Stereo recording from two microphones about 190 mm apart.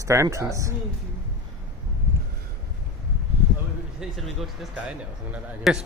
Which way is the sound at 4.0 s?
Centre (ahead or behind).